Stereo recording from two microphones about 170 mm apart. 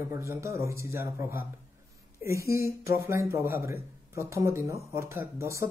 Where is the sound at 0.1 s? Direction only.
15° right (ahead or behind).